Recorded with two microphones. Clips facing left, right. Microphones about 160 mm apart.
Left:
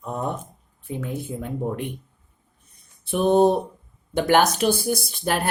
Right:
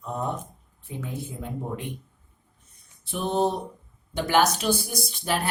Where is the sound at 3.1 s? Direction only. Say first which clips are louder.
Left 8 dB; 55° left (ahead or behind).